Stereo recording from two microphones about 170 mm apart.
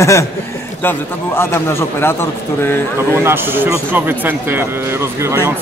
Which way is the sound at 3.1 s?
15° right (ahead or behind).